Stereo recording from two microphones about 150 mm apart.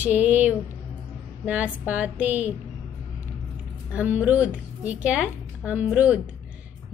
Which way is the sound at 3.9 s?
10° right (ahead or behind).